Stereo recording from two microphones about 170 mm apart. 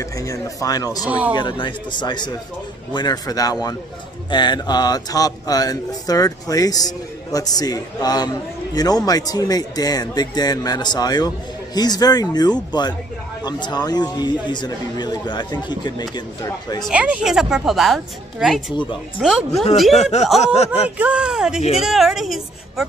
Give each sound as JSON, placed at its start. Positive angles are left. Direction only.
{"t": 0.0, "sound": "speech", "side_deg": 20}
{"t": 1.0, "sound": "speech", "side_deg": -10}
{"t": 1.3, "sound": "speech", "side_deg": 25}
{"t": 16.8, "sound": "a woman's voice", "side_deg": -5}
{"t": 20.0, "sound": "speech", "side_deg": 40}
{"t": 21.0, "sound": "a woman's voice", "side_deg": -5}